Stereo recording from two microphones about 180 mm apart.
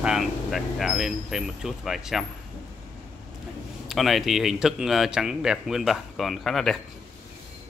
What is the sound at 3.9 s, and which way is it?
Speech, centre (ahead or behind).